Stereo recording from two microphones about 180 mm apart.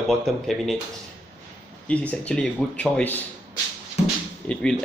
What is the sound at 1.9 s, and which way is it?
Speech, 5° left (ahead or behind).